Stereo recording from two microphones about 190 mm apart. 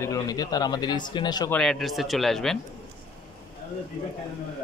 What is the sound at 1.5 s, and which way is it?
Speech, 5° left (ahead or behind).